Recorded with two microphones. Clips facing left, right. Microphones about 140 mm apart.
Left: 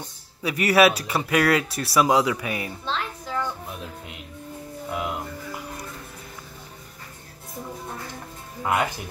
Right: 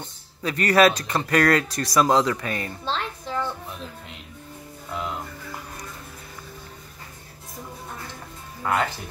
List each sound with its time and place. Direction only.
0.0 s speech: 10° left (ahead or behind)
2.8 s a sound: 30° right (ahead or behind)
4.9 s music: 10° left (ahead or behind)
8.6 s speech: 10° left (ahead or behind)